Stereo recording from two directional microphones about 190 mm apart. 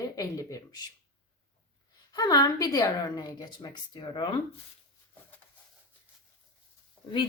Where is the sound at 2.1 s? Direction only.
20° left (ahead or behind).